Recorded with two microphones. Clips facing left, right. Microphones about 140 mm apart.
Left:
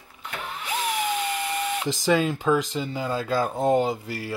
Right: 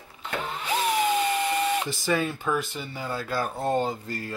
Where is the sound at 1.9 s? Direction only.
20° left (ahead or behind).